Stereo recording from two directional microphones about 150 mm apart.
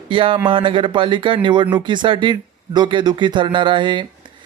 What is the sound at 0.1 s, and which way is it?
Speech, 35° right (ahead or behind).